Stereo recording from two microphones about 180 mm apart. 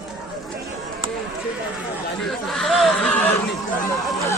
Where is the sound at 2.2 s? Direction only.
Centre (ahead or behind).